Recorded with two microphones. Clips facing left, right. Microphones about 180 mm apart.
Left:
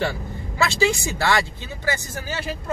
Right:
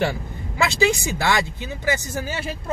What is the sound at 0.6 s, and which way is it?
Speech, 20° right (ahead or behind).